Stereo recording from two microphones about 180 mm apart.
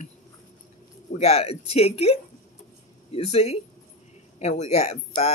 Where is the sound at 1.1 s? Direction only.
35° left (ahead or behind).